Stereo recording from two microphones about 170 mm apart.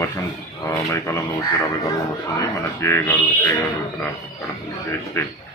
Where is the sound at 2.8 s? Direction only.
15° left (ahead or behind).